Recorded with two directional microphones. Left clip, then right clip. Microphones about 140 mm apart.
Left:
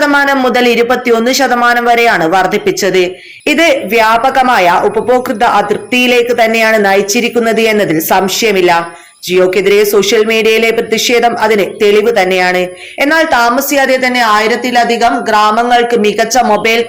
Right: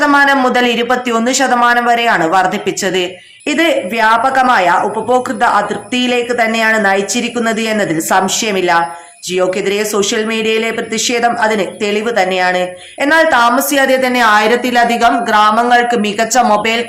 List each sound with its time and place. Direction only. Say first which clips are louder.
0.0 s a man's voice: left 1 dB; 20° left (ahead or behind)